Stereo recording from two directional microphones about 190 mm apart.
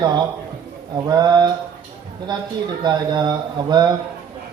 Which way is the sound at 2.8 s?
20° right (ahead or behind).